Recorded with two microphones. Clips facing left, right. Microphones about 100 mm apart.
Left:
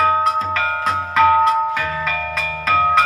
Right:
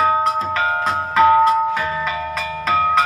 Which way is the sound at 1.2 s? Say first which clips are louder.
Right 1 dB; 30° right (ahead or behind).